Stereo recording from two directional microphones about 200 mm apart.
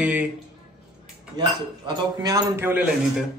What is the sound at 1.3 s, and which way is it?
A man's voice, 20° right (ahead or behind).